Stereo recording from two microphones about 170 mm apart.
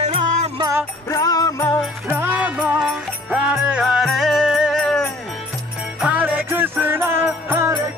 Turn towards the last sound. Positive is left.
turn(degrees=-15)  # may be behind; listen again after turning